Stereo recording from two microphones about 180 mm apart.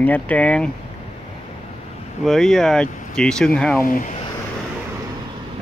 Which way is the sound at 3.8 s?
50° left (ahead or behind).